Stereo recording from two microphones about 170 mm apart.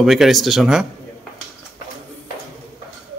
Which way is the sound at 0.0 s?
Centre (ahead or behind).